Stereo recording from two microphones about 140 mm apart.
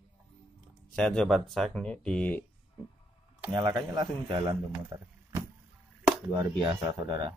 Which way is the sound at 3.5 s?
30° right (ahead or behind).